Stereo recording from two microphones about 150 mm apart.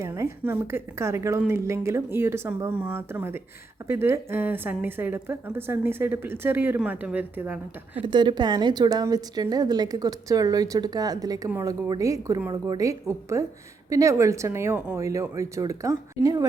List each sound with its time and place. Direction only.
0.0 s a woman's voice: 20° right (ahead or behind)
8.0 s a woman's voice: 30° right (ahead or behind)